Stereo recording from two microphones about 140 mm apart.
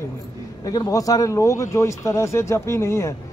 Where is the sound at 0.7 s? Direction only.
25° left (ahead or behind).